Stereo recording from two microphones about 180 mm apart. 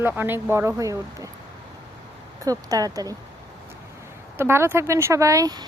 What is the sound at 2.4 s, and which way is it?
Speech, 20° right (ahead or behind).